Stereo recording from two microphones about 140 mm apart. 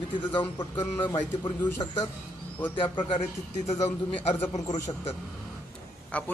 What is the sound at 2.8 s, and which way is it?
Speech, 35° left (ahead or behind).